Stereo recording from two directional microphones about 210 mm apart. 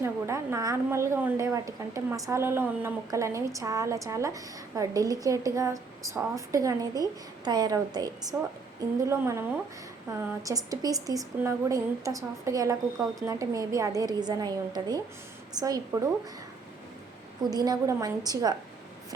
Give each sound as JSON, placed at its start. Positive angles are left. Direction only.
{"t": 0.0, "sound": "a woman's voice", "side_deg": -15}
{"t": 17.5, "sound": "a woman's voice", "side_deg": -20}